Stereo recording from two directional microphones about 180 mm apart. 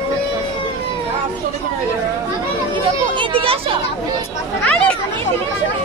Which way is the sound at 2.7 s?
30° right (ahead or behind).